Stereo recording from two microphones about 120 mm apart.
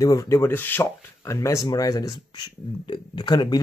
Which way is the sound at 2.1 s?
40° left (ahead or behind).